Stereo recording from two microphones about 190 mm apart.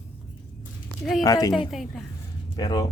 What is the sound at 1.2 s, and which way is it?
Speech, 20° left (ahead or behind).